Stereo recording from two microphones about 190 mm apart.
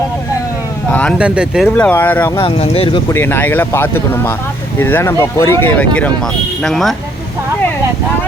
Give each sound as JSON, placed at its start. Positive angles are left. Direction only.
{"t": 0.9, "sound": "speech", "side_deg": 10}
{"t": 1.2, "sound": "speech", "side_deg": -5}
{"t": 1.7, "sound": "speech", "side_deg": 10}
{"t": 2.4, "sound": "speech", "side_deg": 30}
{"t": 3.1, "sound": "speech", "side_deg": 10}